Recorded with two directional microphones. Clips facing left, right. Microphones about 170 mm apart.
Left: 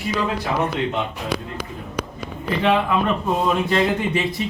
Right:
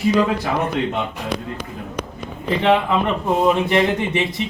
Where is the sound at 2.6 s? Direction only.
20° right (ahead or behind).